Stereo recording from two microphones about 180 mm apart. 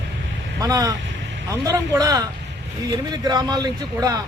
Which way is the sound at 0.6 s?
20° right (ahead or behind).